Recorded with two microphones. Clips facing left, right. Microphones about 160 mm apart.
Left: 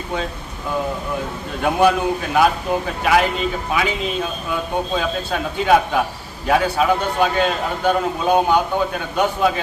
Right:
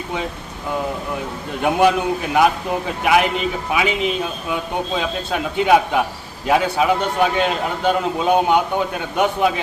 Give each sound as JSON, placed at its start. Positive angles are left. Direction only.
{"t": 1.6, "sound": "a man's voice", "side_deg": -15}